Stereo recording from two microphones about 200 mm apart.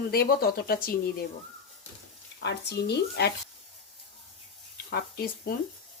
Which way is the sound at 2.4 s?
55° left (ahead or behind).